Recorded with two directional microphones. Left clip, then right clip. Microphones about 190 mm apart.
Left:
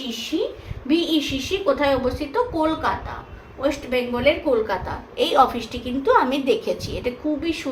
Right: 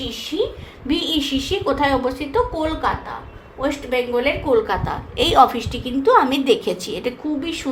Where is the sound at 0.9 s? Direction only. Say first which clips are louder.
Even; 35° right (ahead or behind).